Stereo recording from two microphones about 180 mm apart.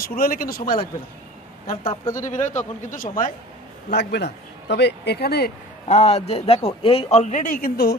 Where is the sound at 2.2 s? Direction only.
45° left (ahead or behind).